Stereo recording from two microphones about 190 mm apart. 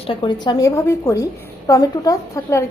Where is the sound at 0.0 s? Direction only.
25° left (ahead or behind).